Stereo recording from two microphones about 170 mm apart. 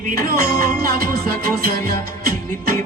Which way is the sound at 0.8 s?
60° right (ahead or behind).